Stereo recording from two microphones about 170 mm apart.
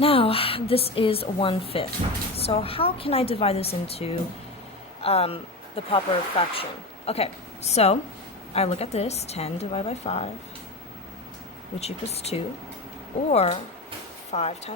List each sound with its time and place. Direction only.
0.0 s a woman's voice: 35° left (ahead or behind)
11.8 s a woman's voice: 40° left (ahead or behind)